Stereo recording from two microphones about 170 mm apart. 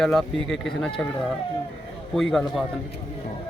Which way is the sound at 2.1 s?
Centre (ahead or behind).